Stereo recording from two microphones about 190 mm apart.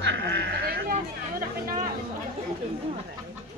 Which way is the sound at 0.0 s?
65° right (ahead or behind).